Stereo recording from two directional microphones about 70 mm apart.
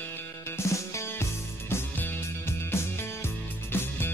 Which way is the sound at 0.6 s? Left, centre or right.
Left.